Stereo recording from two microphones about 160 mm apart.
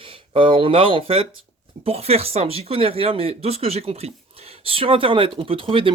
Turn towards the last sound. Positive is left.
turn(degrees=-35)  # may be behind; listen again after turning